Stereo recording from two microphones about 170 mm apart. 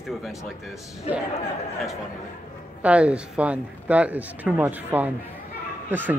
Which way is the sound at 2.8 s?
5° right (ahead or behind).